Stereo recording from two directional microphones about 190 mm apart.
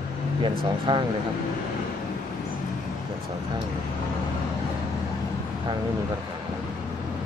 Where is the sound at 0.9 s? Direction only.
25° right (ahead or behind).